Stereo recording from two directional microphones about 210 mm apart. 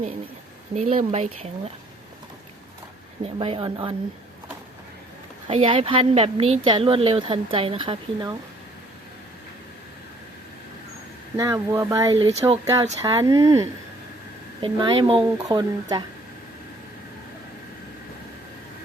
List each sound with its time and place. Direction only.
0.7 s speech: 30° right (ahead or behind)
3.2 s a woman's voice: 25° right (ahead or behind)
5.5 s a woman's voice: 25° right (ahead or behind)
11.3 s speech: 15° right (ahead or behind)
12.1 s a woman's voice: 25° right (ahead or behind)
12.6 s a woman's voice: 15° right (ahead or behind)